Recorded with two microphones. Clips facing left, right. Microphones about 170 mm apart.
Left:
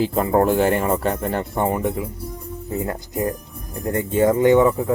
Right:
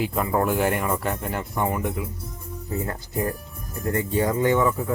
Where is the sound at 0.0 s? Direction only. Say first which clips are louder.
Left 6 dB; 30° left (ahead or behind).